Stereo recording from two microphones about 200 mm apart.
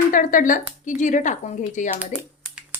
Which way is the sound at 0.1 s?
45° left (ahead or behind).